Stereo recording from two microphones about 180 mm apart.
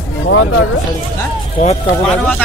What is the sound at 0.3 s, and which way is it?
Speech, 90° left.